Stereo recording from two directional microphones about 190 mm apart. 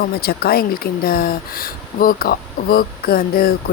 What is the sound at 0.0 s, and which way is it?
A woman's voice, 55° left (ahead or behind).